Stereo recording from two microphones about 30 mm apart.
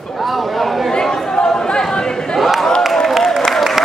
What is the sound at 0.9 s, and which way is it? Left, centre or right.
Chatter, left.